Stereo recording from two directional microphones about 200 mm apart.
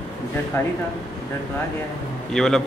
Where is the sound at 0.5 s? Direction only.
10° left (ahead or behind).